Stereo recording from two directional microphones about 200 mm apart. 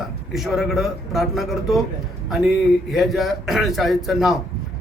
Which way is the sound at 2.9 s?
Centre (ahead or behind).